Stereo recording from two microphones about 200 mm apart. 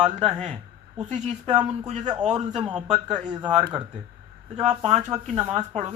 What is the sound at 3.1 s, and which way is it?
Speech, 20° right (ahead or behind).